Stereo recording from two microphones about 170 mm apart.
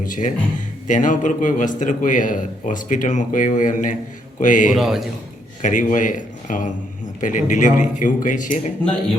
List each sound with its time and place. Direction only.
0.0 s a man's voice: 50° left (ahead or behind)
4.7 s a man's voice: centre (ahead or behind)
5.6 s a man's voice: 50° left (ahead or behind)